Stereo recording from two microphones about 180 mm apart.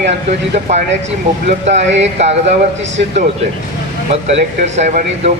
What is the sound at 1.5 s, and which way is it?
Speech, 40° right (ahead or behind).